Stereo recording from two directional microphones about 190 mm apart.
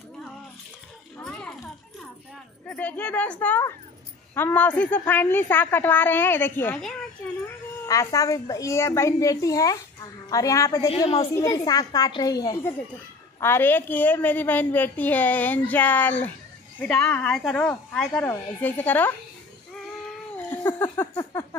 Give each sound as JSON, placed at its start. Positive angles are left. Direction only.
{"t": 1.2, "sound": "children playing", "side_deg": 5}
{"t": 2.6, "sound": "a woman's voice", "side_deg": 5}
{"t": 10.9, "sound": "a woman's voice", "side_deg": 30}
{"t": 11.4, "sound": "a child's voice", "side_deg": 20}
{"t": 20.6, "sound": "a sound", "side_deg": 10}